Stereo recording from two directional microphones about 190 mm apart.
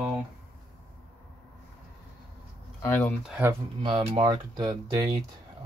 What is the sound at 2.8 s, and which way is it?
Speech, 10° left (ahead or behind).